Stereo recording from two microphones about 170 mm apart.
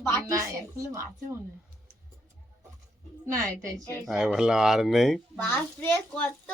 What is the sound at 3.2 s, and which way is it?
Speech, 20° right (ahead or behind).